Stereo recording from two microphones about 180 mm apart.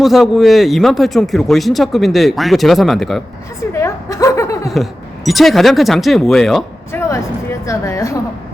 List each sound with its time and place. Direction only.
0.0 s a man's voice: centre (ahead or behind)
3.7 s chuckle: 15° left (ahead or behind)
4.7 s a man's voice: centre (ahead or behind)
7.1 s a woman's voice: 15° left (ahead or behind)